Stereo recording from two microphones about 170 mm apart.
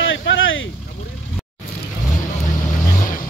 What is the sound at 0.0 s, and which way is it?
Vehicle, 90° left.